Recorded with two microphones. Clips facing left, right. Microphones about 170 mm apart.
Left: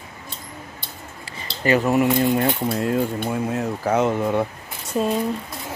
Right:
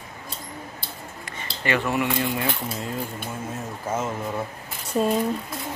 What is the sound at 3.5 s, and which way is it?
Speech, 70° left (ahead or behind).